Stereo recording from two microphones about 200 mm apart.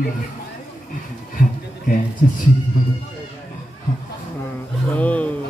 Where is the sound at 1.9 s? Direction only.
45° left (ahead or behind).